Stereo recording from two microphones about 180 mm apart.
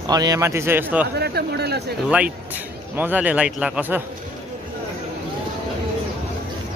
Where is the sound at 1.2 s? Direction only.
65° right (ahead or behind).